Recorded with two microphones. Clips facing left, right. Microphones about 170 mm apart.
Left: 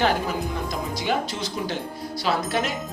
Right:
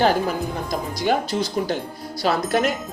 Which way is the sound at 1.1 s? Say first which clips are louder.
Right 6 dB; 40° right (ahead or behind).